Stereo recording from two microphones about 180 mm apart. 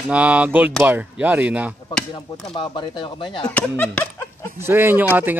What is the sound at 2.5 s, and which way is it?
Speech, 25° left (ahead or behind).